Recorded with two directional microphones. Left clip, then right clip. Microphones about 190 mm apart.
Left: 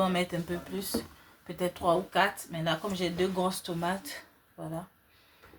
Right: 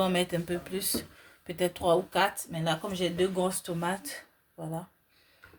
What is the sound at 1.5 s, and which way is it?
Speech, 50° right (ahead or behind).